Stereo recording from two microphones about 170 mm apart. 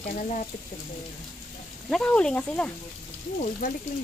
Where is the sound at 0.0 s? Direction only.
50° left (ahead or behind).